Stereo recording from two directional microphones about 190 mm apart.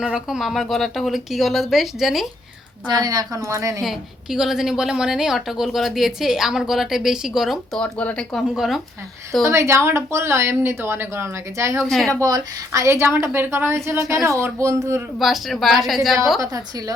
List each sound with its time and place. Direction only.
0.0 s a woman's voice: 5° right (ahead or behind)
2.8 s a woman's voice: 20° right (ahead or behind)
3.8 s a woman's voice: centre (ahead or behind)
9.5 s a woman's voice: 15° right (ahead or behind)
11.8 s a woman's voice: centre (ahead or behind)
12.2 s a woman's voice: 15° right (ahead or behind)
15.2 s a woman's voice: centre (ahead or behind)
16.4 s a woman's voice: 20° right (ahead or behind)